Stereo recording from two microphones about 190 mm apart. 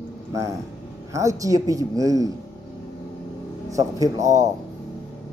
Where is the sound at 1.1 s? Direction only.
15° right (ahead or behind).